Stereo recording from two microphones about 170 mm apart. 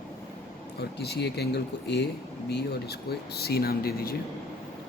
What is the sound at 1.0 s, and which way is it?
A man's voice, 75° left (ahead or behind).